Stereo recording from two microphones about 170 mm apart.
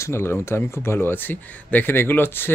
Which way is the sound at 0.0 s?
15° left (ahead or behind).